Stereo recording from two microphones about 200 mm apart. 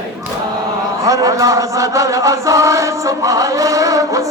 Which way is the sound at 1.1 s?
15° right (ahead or behind).